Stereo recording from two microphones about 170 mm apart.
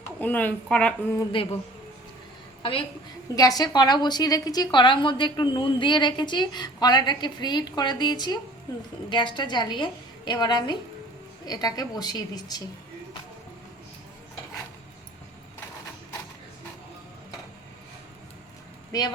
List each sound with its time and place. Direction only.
0.2 s speech: 10° left (ahead or behind)
1.4 s a woman's voice: 30° left (ahead or behind)
2.6 s a woman's voice: 30° left (ahead or behind)
18.9 s speech: 25° left (ahead or behind)